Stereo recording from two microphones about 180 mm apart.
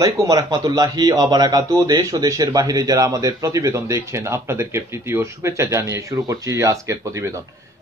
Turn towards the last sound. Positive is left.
turn(degrees=-15)  # may be behind; listen again after turning